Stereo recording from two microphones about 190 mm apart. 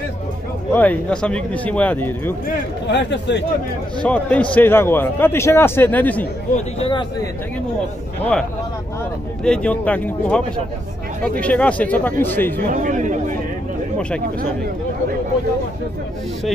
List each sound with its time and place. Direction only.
0.7 s a man's voice: 5° left (ahead or behind)
2.9 s speech: 65° left (ahead or behind)
4.0 s a man's voice: 5° left (ahead or behind)
6.5 s speech: 30° left (ahead or behind)
9.4 s a man's voice: 5° left (ahead or behind)
12.5 s speech: 45° right (ahead or behind)